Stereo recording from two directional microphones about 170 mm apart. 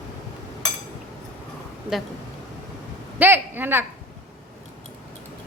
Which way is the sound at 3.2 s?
10° right (ahead or behind).